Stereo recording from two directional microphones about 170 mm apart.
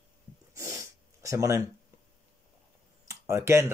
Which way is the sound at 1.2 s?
20° right (ahead or behind).